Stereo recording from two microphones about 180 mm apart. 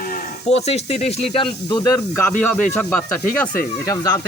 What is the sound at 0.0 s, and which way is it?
Speech, 40° left (ahead or behind).